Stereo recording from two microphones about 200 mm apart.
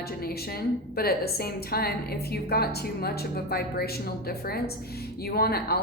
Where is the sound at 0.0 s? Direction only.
50° left (ahead or behind).